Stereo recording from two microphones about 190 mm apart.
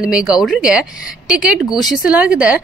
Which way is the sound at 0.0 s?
5° right (ahead or behind).